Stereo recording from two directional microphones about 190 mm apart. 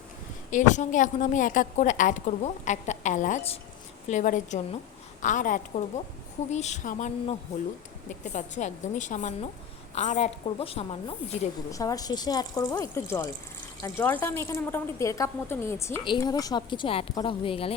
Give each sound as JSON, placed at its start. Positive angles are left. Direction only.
{"t": 0.5, "sound": "a woman's voice", "side_deg": 40}
{"t": 11.7, "sound": "a woman's voice", "side_deg": 20}